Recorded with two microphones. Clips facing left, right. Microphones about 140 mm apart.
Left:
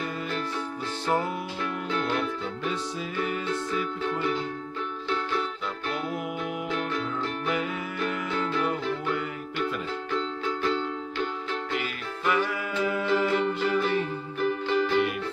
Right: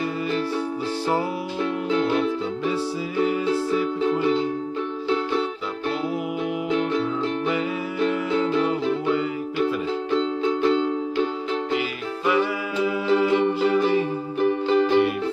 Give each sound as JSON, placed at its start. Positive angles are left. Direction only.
{"t": 1.0, "sound": "music", "side_deg": -10}
{"t": 6.7, "sound": "music", "side_deg": -25}
{"t": 9.1, "sound": "music", "side_deg": -5}
{"t": 10.1, "sound": "music", "side_deg": -20}
{"t": 12.3, "sound": "music", "side_deg": -10}